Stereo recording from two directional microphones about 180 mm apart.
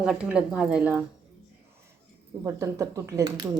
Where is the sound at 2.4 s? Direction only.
15° right (ahead or behind).